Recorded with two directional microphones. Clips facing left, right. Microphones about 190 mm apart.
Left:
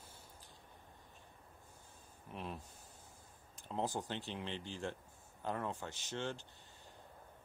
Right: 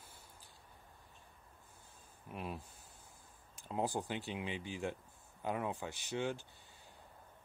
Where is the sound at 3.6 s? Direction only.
10° right (ahead or behind).